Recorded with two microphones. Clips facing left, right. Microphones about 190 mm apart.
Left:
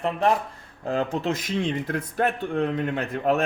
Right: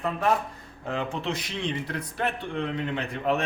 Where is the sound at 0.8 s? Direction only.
40° left (ahead or behind).